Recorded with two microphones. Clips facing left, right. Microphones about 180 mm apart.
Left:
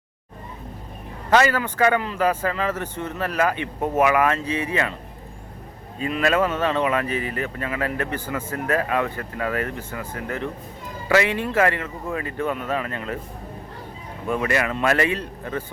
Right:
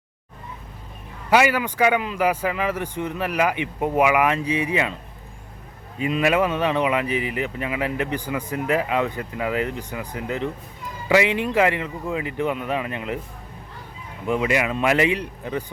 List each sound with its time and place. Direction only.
1.3 s speech: 10° right (ahead or behind)
6.0 s speech: 15° right (ahead or behind)
14.3 s speech: 15° right (ahead or behind)